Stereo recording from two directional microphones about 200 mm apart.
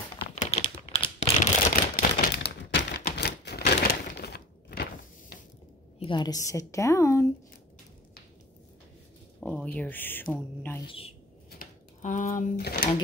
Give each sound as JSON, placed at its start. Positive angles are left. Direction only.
{"t": 0.4, "sound": "typing", "side_deg": 35}
{"t": 1.2, "sound": "shuffling cards", "side_deg": 30}
{"t": 2.1, "sound": "typewriter", "side_deg": 55}
{"t": 5.9, "sound": "a woman's voice", "side_deg": 25}
{"t": 9.4, "sound": "a woman's voice", "side_deg": 5}
{"t": 10.9, "sound": "speech", "side_deg": 30}
{"t": 11.5, "sound": "speech", "side_deg": 40}